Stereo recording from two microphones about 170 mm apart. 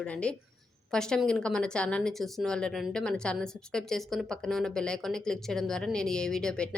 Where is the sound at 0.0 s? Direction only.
5° left (ahead or behind).